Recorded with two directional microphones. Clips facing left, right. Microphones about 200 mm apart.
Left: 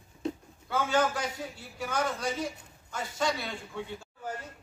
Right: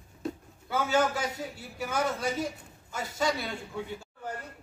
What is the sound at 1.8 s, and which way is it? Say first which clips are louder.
A man's voice: right 1 dB; 5° right (ahead or behind).